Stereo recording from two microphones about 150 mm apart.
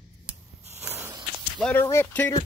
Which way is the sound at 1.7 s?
15° left (ahead or behind).